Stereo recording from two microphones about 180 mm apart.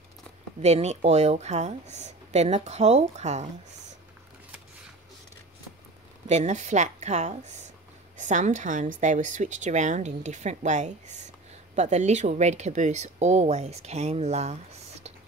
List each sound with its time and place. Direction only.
0.6 s speech: 35° right (ahead or behind)
6.2 s speech: 40° right (ahead or behind)